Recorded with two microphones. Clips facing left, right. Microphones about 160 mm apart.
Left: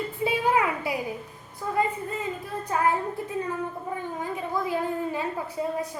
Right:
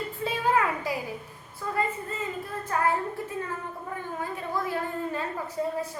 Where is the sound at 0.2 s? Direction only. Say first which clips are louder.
Left 5 dB; 10° left (ahead or behind).